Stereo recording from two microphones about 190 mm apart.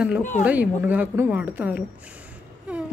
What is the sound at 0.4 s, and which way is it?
Speech, 10° right (ahead or behind).